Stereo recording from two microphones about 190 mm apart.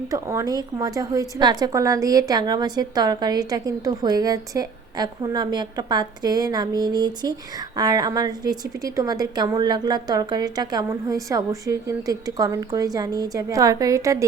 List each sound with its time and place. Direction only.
0.1 s a woman's voice: 15° right (ahead or behind)